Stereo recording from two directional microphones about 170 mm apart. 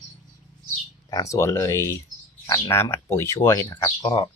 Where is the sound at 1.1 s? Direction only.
20° left (ahead or behind).